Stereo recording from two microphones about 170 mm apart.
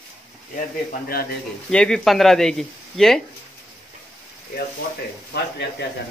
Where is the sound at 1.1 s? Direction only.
60° left (ahead or behind).